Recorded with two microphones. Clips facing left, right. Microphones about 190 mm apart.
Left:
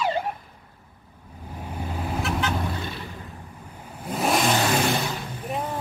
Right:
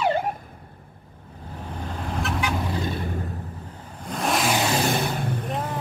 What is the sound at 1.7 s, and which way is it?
Vehicle, 10° left (ahead or behind).